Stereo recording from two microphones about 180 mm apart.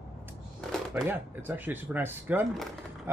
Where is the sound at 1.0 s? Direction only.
10° right (ahead or behind).